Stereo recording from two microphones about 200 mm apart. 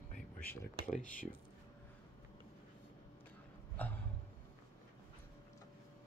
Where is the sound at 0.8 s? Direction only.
40° left (ahead or behind).